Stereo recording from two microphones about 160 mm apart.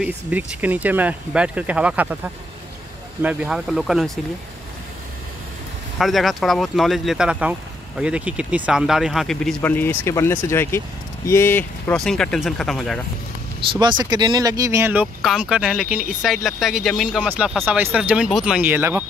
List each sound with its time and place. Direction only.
0.6 s speech: 10° right (ahead or behind)
5.9 s speech: centre (ahead or behind)
9.6 s speech: 15° left (ahead or behind)
13.7 s speech: 25° right (ahead or behind)
15.2 s speech: 5° right (ahead or behind)